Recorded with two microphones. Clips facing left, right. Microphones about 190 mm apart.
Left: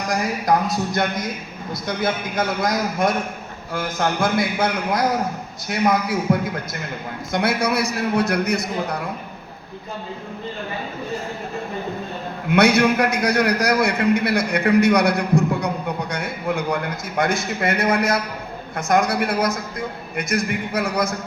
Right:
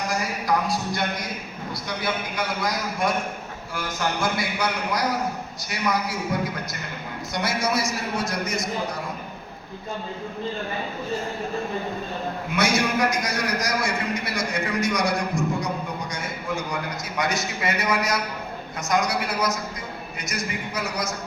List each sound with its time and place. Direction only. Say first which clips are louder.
1.9 s a man's voice: left 6 dB; 50° left (ahead or behind)
7.3 s a man's voice: left 5 dB; 60° left (ahead or behind)
12.5 s a man's voice: left 8 dB; 60° left (ahead or behind)